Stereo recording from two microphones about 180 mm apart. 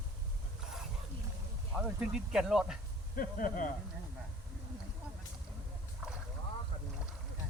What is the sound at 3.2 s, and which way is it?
Speech, 50° left (ahead or behind).